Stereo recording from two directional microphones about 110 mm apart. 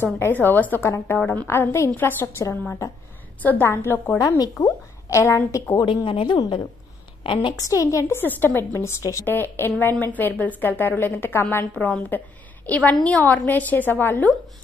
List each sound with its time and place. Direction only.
0.0 s a woman's voice: 20° left (ahead or behind)
3.4 s a woman's voice: 20° left (ahead or behind)
4.2 s a woman's voice: 30° left (ahead or behind)
6.0 s a woman's voice: 45° left (ahead or behind)
7.5 s a woman's voice: 30° left (ahead or behind)
11.7 s a woman's voice: 5° left (ahead or behind)